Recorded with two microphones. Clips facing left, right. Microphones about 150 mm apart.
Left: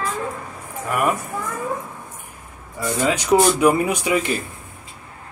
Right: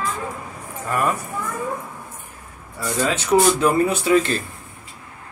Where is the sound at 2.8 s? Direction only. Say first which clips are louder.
Left 1 dB; 15° left (ahead or behind).